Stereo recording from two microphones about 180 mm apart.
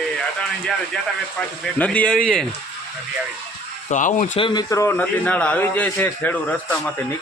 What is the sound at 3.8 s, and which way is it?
Speech, 45° left (ahead or behind).